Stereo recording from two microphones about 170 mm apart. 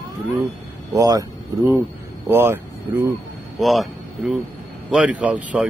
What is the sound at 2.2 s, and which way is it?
Speech, 15° right (ahead or behind).